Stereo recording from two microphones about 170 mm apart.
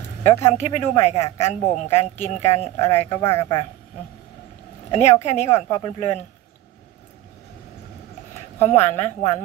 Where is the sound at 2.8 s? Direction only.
15° left (ahead or behind).